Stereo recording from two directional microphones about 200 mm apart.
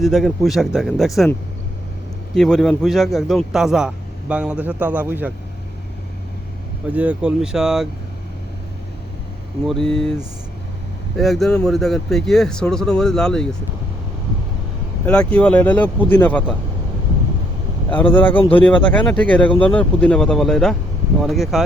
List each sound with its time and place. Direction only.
0.0 s a man's voice: centre (ahead or behind)
6.9 s a man's voice: 5° right (ahead or behind)
9.6 s a man's voice: centre (ahead or behind)
11.2 s a man's voice: centre (ahead or behind)
15.3 s speech: 5° left (ahead or behind)
18.1 s speech: 10° left (ahead or behind)
18.3 s speech: 25° left (ahead or behind)
18.9 s a man's voice: 5° left (ahead or behind)